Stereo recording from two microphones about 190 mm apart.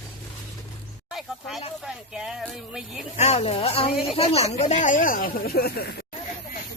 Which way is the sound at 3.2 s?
35° left (ahead or behind).